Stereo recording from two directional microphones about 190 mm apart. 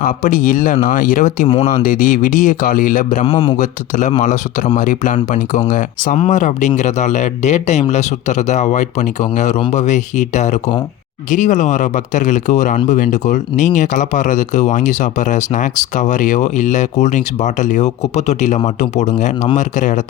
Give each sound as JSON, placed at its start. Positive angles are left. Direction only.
{"t": 0.0, "sound": "a man's voice", "side_deg": 45}
{"t": 3.2, "sound": "speech", "side_deg": 25}
{"t": 3.6, "sound": "a man's voice", "side_deg": 40}